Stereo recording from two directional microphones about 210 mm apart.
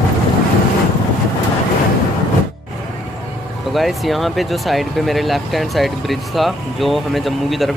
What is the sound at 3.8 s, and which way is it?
Speech, centre (ahead or behind).